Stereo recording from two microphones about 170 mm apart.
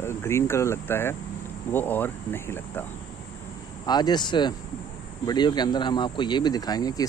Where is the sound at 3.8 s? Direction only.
25° left (ahead or behind).